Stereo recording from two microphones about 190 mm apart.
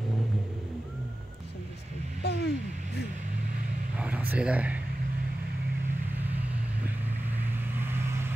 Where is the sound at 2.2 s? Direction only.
60° left (ahead or behind).